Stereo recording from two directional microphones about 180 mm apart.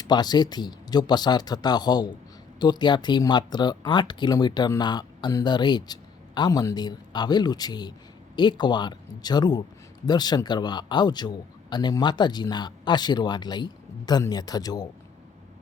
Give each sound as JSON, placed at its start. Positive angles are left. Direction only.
{"t": 0.0, "sound": "speech", "side_deg": 25}